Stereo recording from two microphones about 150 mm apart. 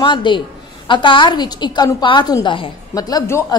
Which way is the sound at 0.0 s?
30° left (ahead or behind).